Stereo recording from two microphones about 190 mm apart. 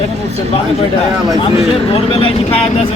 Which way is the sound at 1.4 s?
30° left (ahead or behind).